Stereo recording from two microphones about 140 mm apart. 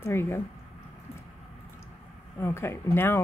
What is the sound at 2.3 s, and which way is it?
Speech, 20° left (ahead or behind).